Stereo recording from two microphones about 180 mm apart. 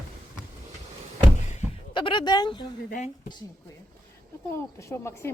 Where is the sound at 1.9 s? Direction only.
25° left (ahead or behind).